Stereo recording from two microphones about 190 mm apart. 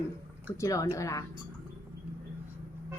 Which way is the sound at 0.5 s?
15° left (ahead or behind).